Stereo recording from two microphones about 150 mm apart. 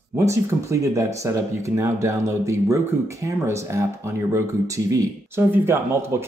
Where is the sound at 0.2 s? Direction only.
20° right (ahead or behind).